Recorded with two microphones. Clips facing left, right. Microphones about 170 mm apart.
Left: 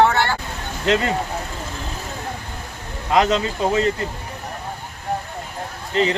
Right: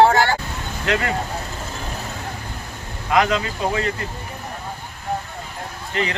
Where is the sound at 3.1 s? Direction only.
30° left (ahead or behind).